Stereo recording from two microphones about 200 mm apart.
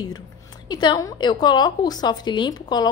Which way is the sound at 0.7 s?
20° left (ahead or behind).